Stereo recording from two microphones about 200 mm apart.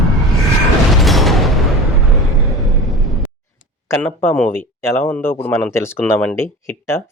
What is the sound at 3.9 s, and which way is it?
Speech, 10° left (ahead or behind).